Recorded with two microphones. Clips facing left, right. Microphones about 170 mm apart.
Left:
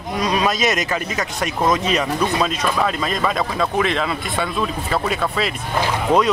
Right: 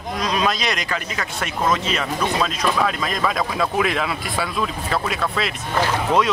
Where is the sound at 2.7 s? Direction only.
Centre (ahead or behind).